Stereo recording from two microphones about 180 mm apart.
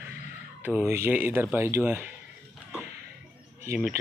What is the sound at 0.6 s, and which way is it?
Speech, 15° right (ahead or behind).